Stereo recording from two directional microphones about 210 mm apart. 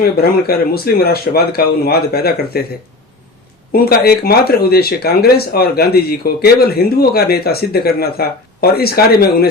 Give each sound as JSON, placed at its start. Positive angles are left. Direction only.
{"t": 0.0, "sound": "speech", "side_deg": 45}
{"t": 3.7, "sound": "speech", "side_deg": 45}